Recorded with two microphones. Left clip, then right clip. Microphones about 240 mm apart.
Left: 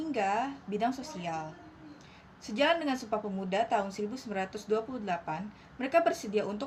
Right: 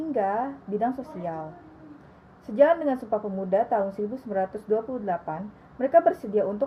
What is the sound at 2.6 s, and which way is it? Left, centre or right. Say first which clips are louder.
A woman's voice: right 8 dB; centre.